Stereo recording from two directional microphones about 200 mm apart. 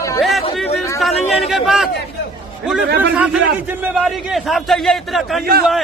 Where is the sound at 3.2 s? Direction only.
10° right (ahead or behind).